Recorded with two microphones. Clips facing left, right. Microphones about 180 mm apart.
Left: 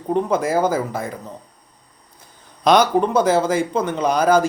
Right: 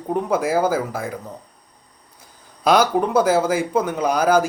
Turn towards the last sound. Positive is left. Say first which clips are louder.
# left 1 dB
turn(degrees=-10)  # may be behind; listen again after turning